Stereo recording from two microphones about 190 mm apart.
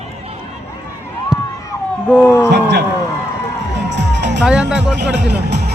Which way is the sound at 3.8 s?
65° right (ahead or behind).